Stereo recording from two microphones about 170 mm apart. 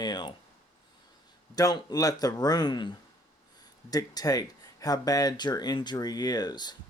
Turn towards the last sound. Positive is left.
turn(degrees=25)  # may be behind; listen again after turning